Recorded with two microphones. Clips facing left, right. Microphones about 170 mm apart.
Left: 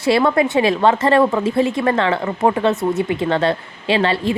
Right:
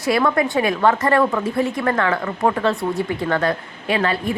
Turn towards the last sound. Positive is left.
turn(degrees=25)  # may be behind; listen again after turning